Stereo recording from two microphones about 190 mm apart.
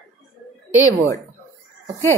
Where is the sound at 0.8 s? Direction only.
15° left (ahead or behind).